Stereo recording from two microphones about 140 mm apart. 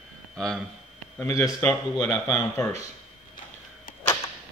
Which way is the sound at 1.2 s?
25° left (ahead or behind).